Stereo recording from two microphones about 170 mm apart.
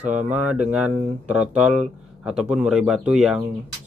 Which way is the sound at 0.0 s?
45° right (ahead or behind).